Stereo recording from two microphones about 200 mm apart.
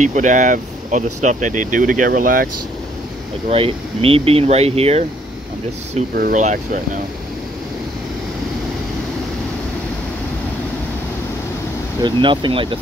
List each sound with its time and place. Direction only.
0.0 s speech: 40° right (ahead or behind)
3.4 s speech: 30° right (ahead or behind)
6.1 s speech: 45° right (ahead or behind)
12.0 s speech: 25° right (ahead or behind)